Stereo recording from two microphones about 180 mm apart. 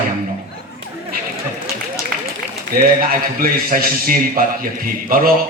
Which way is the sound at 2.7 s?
55° right (ahead or behind).